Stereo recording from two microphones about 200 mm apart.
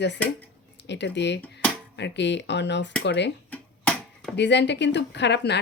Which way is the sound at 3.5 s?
5° left (ahead or behind).